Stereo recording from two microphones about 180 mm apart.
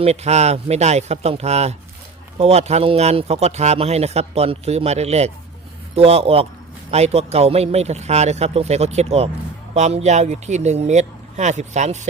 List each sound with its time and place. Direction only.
0.0 s speech: 35° right (ahead or behind)